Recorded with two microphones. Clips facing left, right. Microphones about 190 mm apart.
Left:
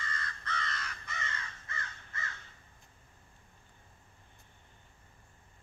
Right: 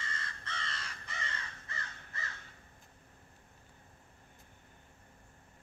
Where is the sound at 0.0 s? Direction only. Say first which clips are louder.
Left 3 dB; 25° right (ahead or behind).